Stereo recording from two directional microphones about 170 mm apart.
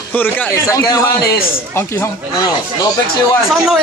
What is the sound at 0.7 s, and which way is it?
Speech, 20° left (ahead or behind).